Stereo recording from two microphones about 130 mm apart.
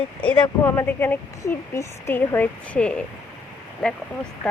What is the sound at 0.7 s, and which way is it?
A woman's voice, 15° left (ahead or behind).